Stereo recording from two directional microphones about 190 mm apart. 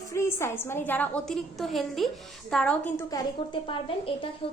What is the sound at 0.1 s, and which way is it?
A woman's voice, 15° left (ahead or behind).